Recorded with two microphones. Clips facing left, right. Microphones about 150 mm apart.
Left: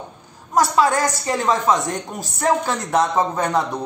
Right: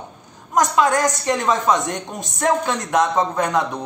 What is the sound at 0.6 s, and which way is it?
A woman's voice, 5° left (ahead or behind).